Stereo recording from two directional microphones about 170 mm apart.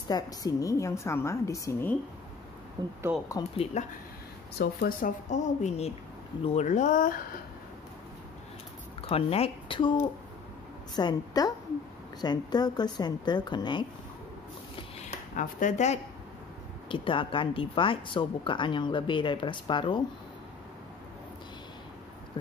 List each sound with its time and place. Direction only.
0.1 s a woman's voice: 20° left (ahead or behind)
2.8 s speech: 25° right (ahead or behind)
3.4 s speech: 25° left (ahead or behind)
3.8 s speech: 40° left (ahead or behind)
4.6 s a woman's voice: 60° left (ahead or behind)
9.0 s speech: 35° left (ahead or behind)
11.0 s speech: 25° left (ahead or behind)
15.0 s speech: 45° left (ahead or behind)
16.9 s speech: 30° left (ahead or behind)